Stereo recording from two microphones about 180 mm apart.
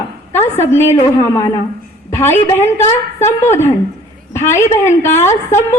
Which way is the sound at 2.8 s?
40° left (ahead or behind).